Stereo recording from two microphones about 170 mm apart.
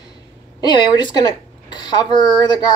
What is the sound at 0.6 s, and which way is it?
Speech, 25° left (ahead or behind).